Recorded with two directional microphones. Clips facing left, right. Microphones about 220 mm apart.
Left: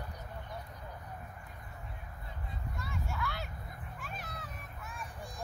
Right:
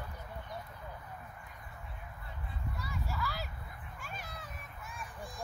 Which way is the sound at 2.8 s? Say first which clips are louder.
Left 1 dB; centre (ahead or behind).